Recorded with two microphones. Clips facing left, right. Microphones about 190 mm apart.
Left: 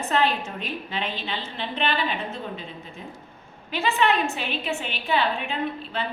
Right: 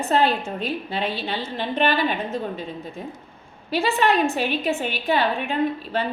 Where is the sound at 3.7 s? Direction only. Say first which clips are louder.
Right 3 dB; 35° right (ahead or behind).